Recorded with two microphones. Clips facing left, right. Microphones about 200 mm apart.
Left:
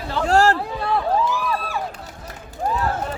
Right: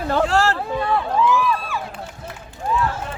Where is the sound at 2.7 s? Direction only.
40° left (ahead or behind).